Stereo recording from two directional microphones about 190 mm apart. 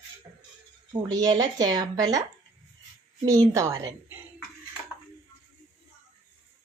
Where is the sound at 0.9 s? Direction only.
20° right (ahead or behind).